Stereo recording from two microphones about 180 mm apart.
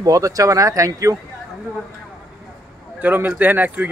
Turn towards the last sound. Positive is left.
turn(degrees=-10)  # may be behind; listen again after turning